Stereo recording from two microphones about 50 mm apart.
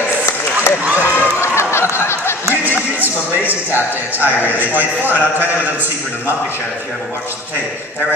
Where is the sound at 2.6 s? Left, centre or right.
Right.